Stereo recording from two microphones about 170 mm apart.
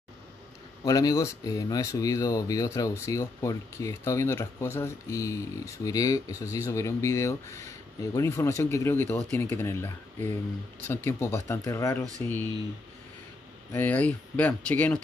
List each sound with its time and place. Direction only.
0.8 s speech: 20° left (ahead or behind)
10.9 s speech: 15° left (ahead or behind)
13.7 s speech: 10° left (ahead or behind)